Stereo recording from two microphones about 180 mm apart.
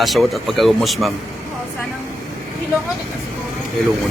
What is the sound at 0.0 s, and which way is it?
A man's voice, centre (ahead or behind).